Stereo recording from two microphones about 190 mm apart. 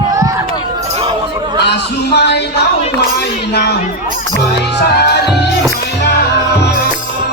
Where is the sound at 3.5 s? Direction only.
60° left (ahead or behind).